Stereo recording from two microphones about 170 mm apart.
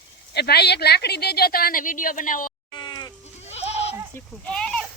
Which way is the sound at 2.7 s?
25° left (ahead or behind).